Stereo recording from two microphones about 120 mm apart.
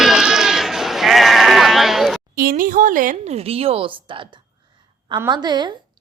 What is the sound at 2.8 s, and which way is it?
A woman's voice, 90° right.